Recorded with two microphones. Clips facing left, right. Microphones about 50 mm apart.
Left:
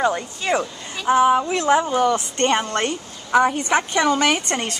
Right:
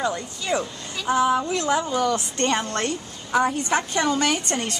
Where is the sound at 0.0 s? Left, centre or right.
Left.